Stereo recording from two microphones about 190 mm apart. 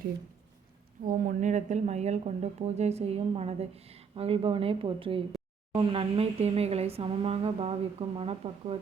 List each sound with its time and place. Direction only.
1.0 s speech: 45° right (ahead or behind)